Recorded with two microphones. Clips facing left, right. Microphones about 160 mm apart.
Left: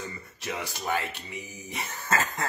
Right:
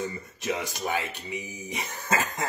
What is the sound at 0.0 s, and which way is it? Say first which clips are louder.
Speech: right 6 dB; 20° right (ahead or behind).